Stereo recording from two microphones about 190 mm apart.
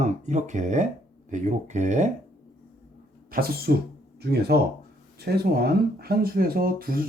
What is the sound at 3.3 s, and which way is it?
Speech, 55° right (ahead or behind).